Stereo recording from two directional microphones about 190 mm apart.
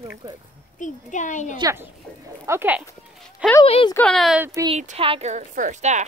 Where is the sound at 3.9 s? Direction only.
5° left (ahead or behind).